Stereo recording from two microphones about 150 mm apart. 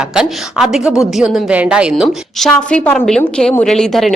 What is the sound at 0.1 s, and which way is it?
A woman's voice, 5° right (ahead or behind).